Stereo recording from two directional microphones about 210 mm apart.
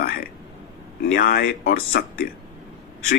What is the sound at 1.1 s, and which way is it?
Speech, 45° left (ahead or behind).